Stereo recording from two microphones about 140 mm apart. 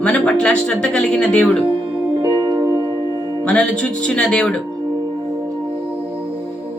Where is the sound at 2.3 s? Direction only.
30° right (ahead or behind).